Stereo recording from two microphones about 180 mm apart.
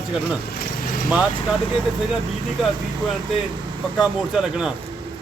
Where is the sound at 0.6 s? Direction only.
50° left (ahead or behind).